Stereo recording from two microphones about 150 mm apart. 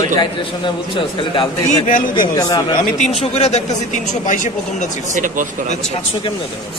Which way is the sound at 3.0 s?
45° left (ahead or behind).